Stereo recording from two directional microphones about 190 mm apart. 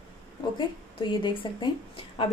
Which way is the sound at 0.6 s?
25° left (ahead or behind).